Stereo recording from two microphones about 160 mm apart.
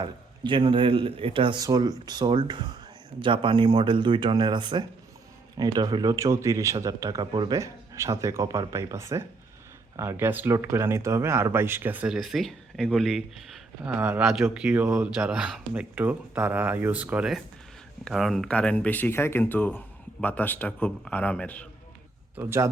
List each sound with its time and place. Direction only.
0.0 s speech: 30° right (ahead or behind); by 13.9 s centre (ahead or behind)
13.9 s speech: 10° right (ahead or behind); by 21.7 s 10° left (ahead or behind)
22.4 s speech: 15° right (ahead or behind)